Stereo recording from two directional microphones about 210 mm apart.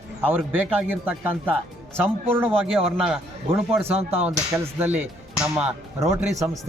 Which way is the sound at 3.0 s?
5° right (ahead or behind).